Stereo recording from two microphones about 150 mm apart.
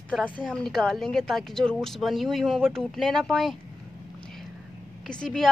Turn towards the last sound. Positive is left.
turn(degrees=5)  # may be behind; listen again after turning